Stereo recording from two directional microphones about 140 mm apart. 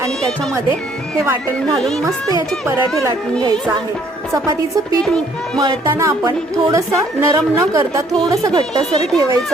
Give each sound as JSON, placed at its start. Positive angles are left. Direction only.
{"t": 1.7, "sound": "music", "side_deg": 0}
{"t": 2.6, "sound": "a woman's voice", "side_deg": -20}
{"t": 4.4, "sound": "a woman's voice", "side_deg": -25}